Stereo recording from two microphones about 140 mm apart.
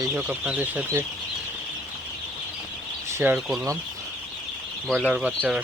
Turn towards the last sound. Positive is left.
turn(degrees=-10)  # may be behind; listen again after turning